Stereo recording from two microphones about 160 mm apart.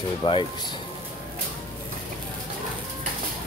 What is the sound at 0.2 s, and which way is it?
Speech, 30° left (ahead or behind).